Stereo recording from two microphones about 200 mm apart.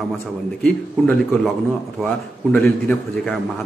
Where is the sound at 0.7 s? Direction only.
5° left (ahead or behind).